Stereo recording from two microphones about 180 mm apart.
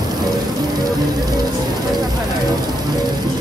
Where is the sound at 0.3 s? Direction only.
20° right (ahead or behind).